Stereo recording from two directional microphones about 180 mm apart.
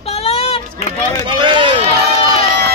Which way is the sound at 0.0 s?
35° left (ahead or behind).